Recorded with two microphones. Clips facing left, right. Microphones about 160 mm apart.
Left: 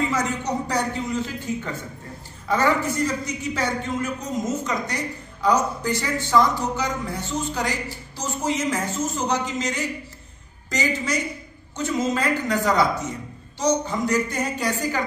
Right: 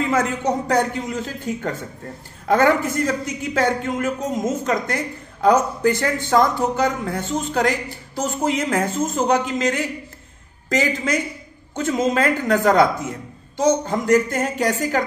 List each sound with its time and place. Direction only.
0.1 s a man's voice: 50° right (ahead or behind)